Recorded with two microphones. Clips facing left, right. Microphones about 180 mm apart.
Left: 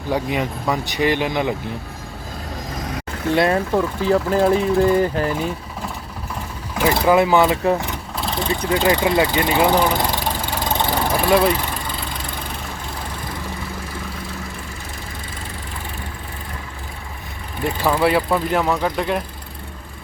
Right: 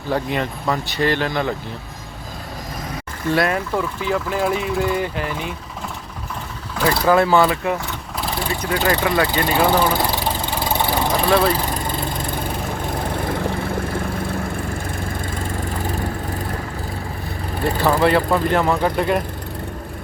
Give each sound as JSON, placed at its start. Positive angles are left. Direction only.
{"t": 0.1, "sound": "speech", "side_deg": 10}
{"t": 3.3, "sound": "speech", "side_deg": 25}
{"t": 6.7, "sound": "speech", "side_deg": 20}
{"t": 8.2, "sound": "vehicle", "side_deg": -5}
{"t": 8.4, "sound": "speech", "side_deg": 20}
{"t": 10.0, "sound": "vehicle", "side_deg": -10}
{"t": 11.1, "sound": "vehicle", "side_deg": 5}
{"t": 13.7, "sound": "vehicle", "side_deg": -50}
{"t": 15.8, "sound": "vehicle", "side_deg": -40}
{"t": 17.8, "sound": "speech", "side_deg": 10}